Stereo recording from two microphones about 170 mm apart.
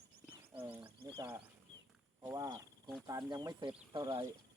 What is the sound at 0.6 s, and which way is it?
Speech, 10° right (ahead or behind).